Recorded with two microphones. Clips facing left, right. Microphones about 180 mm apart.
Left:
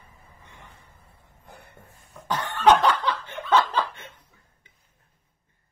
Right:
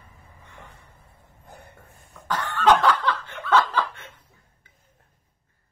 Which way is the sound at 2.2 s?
20° left (ahead or behind).